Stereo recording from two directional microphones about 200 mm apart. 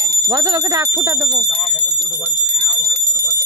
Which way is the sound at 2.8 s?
15° left (ahead or behind).